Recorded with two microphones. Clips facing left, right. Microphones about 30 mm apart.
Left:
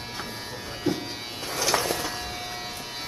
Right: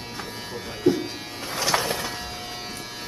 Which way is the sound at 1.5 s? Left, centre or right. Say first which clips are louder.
Right 1 dB; right.